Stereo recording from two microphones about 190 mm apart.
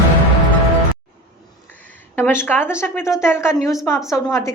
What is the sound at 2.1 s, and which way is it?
A woman's voice, 10° left (ahead or behind).